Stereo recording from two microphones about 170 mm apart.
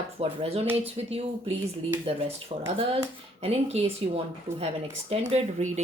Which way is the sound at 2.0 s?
35° right (ahead or behind).